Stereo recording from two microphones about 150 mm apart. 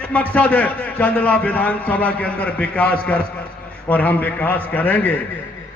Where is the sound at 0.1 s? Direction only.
10° left (ahead or behind).